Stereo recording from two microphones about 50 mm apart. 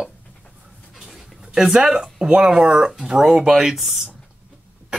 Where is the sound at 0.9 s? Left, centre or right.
Centre.